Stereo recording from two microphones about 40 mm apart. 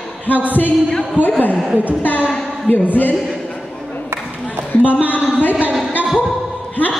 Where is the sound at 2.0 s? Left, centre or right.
Left.